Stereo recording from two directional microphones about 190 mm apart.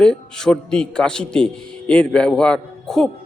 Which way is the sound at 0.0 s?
5° left (ahead or behind).